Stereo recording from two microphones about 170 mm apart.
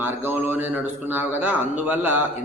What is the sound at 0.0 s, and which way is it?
A man's voice, 10° right (ahead or behind).